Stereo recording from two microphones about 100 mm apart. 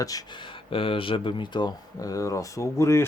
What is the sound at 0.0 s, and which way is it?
Speech, 40° left (ahead or behind).